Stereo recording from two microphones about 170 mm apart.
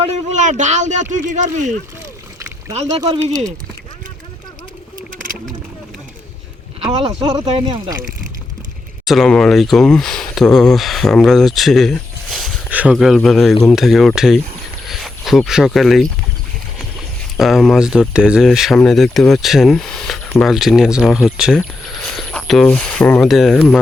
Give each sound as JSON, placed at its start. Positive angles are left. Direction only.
{"t": 0.0, "sound": "speech", "side_deg": -45}
{"t": 5.1, "sound": "a sound", "side_deg": -55}
{"t": 6.9, "sound": "speech", "side_deg": -30}
{"t": 9.0, "sound": "speech", "side_deg": 0}